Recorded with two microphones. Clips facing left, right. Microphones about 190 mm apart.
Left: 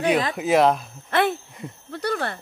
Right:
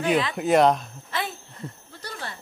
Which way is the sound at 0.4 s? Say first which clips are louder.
Right 1 dB; centre (ahead or behind).